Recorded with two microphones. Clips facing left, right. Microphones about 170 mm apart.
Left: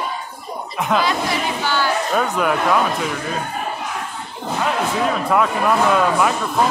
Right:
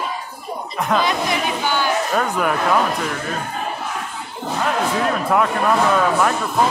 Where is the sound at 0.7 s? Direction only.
Centre (ahead or behind).